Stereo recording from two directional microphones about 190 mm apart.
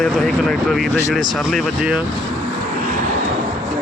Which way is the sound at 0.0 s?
Centre (ahead or behind).